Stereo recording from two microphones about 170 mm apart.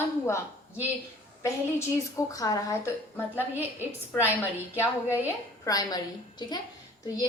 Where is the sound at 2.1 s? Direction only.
20° left (ahead or behind).